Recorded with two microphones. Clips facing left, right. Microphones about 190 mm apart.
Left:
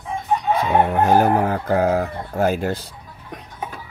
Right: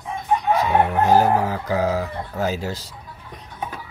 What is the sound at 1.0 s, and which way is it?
Speech, 55° left (ahead or behind).